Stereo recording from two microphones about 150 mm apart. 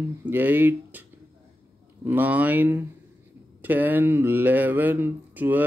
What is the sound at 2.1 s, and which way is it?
Speech, 10° right (ahead or behind).